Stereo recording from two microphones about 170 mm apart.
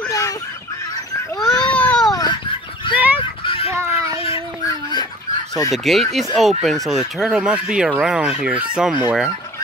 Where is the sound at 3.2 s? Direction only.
35° left (ahead or behind).